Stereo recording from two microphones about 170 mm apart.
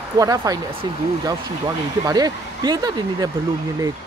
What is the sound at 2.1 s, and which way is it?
Speech, 20° right (ahead or behind).